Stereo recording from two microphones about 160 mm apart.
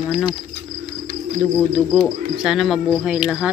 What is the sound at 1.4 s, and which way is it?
Speech, 10° left (ahead or behind).